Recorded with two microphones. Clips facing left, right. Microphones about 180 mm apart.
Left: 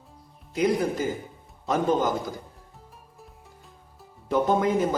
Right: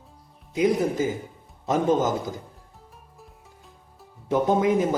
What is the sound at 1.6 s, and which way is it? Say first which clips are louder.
Speech: right 2 dB; 20° right (ahead or behind).